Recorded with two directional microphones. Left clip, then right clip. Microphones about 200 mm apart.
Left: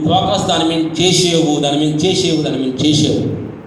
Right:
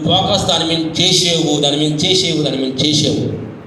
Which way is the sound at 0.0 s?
55° right (ahead or behind).